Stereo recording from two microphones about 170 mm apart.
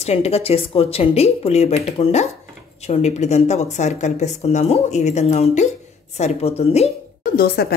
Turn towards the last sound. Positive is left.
turn(degrees=70)  # may be behind; listen again after turning